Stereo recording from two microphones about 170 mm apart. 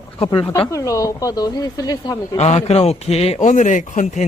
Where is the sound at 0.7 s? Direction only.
20° left (ahead or behind).